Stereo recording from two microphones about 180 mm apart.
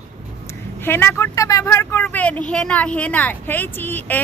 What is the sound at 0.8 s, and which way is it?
Speech, 10° left (ahead or behind).